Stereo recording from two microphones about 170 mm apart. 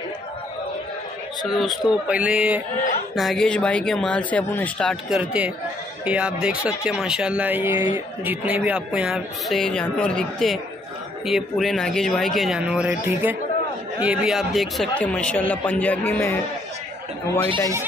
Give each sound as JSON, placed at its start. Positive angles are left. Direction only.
{"t": 1.5, "sound": "speech", "side_deg": 0}
{"t": 5.2, "sound": "speech", "side_deg": -10}